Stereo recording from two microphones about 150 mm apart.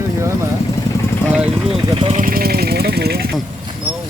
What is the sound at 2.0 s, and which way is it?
Speech, 60° right (ahead or behind).